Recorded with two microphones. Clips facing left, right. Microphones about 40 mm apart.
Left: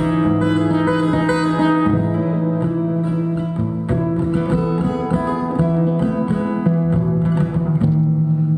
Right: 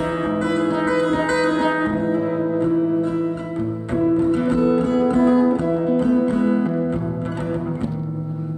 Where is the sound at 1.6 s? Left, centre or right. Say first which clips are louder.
Left 4 dB; centre.